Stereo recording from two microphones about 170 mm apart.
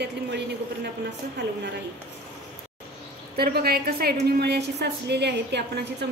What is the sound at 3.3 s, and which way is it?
A woman's voice, 65° right (ahead or behind).